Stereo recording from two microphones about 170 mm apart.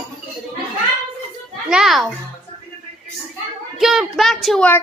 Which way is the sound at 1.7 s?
Centre (ahead or behind).